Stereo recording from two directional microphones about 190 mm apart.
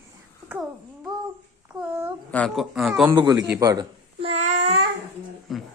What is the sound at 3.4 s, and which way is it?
Speech, 15° right (ahead or behind).